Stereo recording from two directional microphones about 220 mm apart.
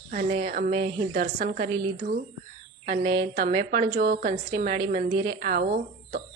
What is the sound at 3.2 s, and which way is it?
A woman's voice, 45° right (ahead or behind).